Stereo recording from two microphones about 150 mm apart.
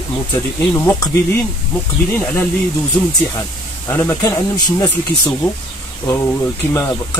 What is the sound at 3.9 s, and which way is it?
Speech, 20° left (ahead or behind).